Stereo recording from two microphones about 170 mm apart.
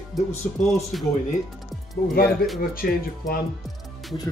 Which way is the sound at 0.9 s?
Centre (ahead or behind).